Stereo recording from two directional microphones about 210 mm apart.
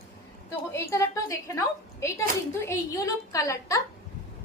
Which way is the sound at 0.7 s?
15° left (ahead or behind).